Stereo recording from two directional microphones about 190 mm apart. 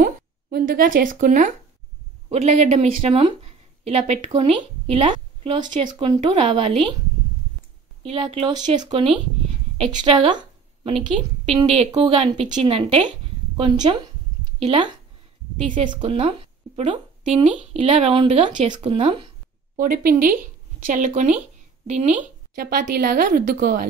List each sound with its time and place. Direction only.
0.0 s a woman's voice: 50° right (ahead or behind); by 6.6 s 25° right (ahead or behind)
8.0 s a woman's voice: 30° right (ahead or behind)
15.9 s a woman's voice: 30° right (ahead or behind)
18.7 s speech: 30° right (ahead or behind)
19.7 s a woman's voice: 50° right (ahead or behind)